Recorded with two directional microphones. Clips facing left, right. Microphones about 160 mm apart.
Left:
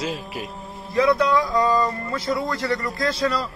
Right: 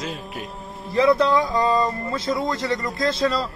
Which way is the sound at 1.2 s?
25° right (ahead or behind).